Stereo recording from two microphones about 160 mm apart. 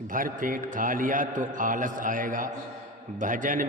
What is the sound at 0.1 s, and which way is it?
A man's voice, 60° right (ahead or behind).